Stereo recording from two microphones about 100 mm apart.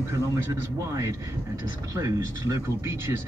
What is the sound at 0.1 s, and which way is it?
A man's voice, 30° right (ahead or behind).